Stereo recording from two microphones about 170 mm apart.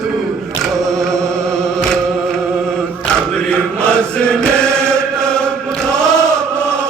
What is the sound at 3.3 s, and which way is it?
Chant, 5° left (ahead or behind).